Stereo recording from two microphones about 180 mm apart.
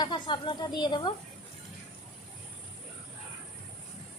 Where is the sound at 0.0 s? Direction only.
25° left (ahead or behind).